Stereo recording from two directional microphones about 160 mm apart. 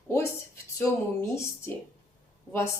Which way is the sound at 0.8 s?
15° left (ahead or behind).